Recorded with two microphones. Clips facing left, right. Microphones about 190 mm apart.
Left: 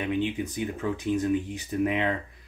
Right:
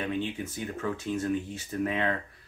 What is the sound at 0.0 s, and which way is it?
Speech, 15° left (ahead or behind).